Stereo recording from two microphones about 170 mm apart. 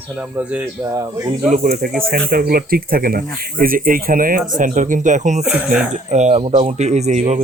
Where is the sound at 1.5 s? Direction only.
55° right (ahead or behind).